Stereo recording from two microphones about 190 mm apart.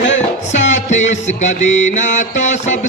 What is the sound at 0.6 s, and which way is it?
Music, 40° left (ahead or behind).